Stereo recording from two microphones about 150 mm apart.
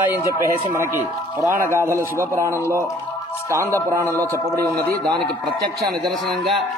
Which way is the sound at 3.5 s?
20° right (ahead or behind).